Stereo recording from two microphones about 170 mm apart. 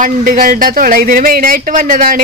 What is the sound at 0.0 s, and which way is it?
Speech, 55° right (ahead or behind).